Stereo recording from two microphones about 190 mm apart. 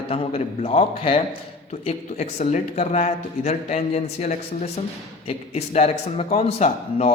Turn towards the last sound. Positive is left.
turn(degrees=35)  # may be behind; listen again after turning